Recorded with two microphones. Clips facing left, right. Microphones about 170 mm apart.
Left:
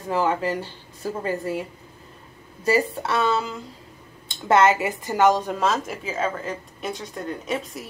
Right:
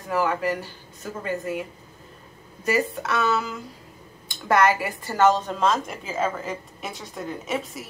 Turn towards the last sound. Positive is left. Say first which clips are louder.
# left 1 dB
turn(degrees=0)  # may be behind; listen again after turning